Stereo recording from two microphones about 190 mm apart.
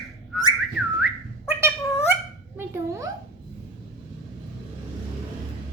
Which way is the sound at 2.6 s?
15° right (ahead or behind).